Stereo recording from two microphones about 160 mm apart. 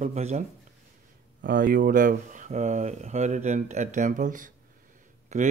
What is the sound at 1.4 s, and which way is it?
Mantra, 65° right (ahead or behind).